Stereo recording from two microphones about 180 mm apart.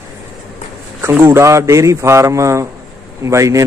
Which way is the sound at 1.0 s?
10° right (ahead or behind).